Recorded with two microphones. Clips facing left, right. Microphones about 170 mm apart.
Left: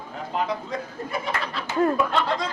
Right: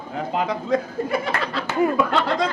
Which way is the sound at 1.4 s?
90° right.